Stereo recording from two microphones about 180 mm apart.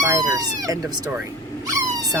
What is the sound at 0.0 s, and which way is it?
Speech, 20° right (ahead or behind).